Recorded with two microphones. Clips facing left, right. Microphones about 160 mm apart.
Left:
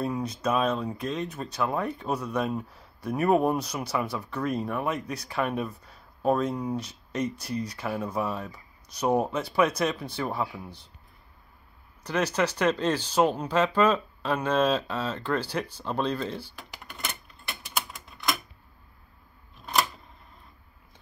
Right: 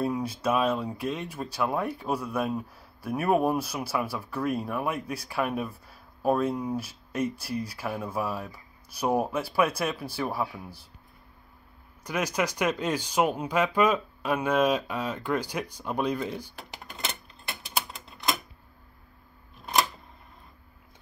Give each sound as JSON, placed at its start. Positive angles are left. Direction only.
{"t": 0.0, "sound": "speech", "side_deg": -5}
{"t": 12.0, "sound": "speech", "side_deg": -10}
{"t": 17.0, "sound": "typewriter", "side_deg": -25}